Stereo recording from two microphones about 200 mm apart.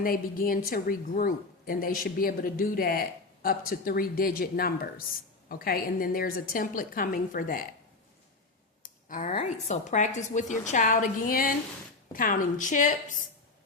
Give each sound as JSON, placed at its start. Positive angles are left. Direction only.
{"t": 0.0, "sound": "a woman's voice", "side_deg": 45}
{"t": 8.8, "sound": "a sound", "side_deg": 40}
{"t": 9.3, "sound": "a woman's voice", "side_deg": 30}